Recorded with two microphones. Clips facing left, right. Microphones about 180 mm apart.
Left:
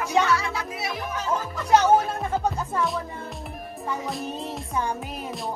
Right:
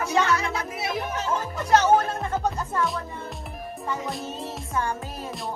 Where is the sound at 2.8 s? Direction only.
Centre (ahead or behind).